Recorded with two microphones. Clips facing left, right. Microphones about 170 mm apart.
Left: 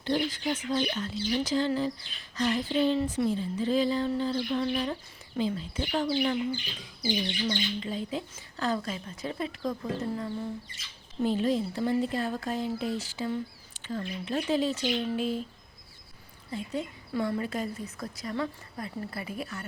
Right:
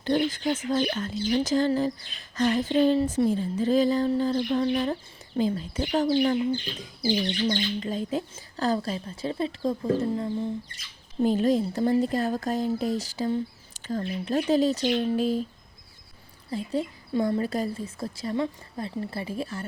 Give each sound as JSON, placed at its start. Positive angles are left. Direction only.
{"t": 0.0, "sound": "bird", "side_deg": -50}
{"t": 8.4, "sound": "speech", "side_deg": -35}
{"t": 11.2, "sound": "speech", "side_deg": -45}
{"t": 16.5, "sound": "a woman's voice", "side_deg": -35}